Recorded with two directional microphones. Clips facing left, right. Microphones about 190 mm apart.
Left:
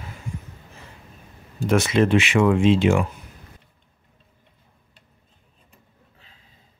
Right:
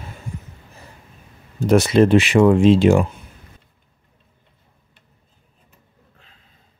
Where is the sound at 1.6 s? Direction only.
35° right (ahead or behind).